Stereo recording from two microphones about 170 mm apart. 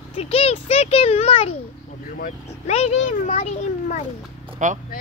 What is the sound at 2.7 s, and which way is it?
A child's voice, 40° left (ahead or behind).